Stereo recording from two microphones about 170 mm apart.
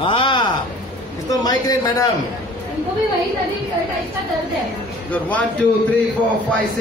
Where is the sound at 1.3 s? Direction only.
20° left (ahead or behind).